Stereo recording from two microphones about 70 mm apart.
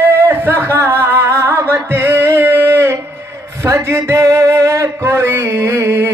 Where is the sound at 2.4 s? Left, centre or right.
Right.